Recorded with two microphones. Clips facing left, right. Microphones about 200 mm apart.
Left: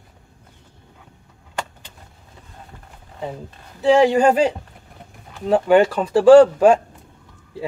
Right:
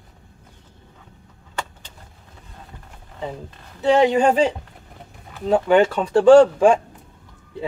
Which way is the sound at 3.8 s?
5° left (ahead or behind).